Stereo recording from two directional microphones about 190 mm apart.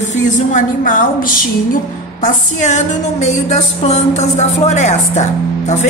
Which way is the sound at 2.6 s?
40° left (ahead or behind).